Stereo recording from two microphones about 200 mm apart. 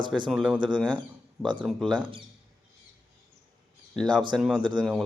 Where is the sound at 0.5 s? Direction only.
20° right (ahead or behind).